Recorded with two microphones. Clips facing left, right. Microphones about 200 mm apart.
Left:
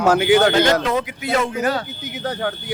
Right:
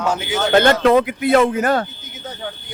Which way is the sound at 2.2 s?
70° left (ahead or behind).